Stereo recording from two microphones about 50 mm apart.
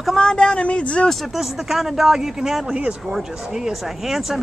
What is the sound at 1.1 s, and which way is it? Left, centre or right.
Speech, centre.